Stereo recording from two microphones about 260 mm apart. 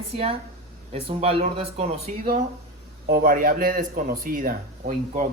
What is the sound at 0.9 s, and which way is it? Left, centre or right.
A man's voice, right.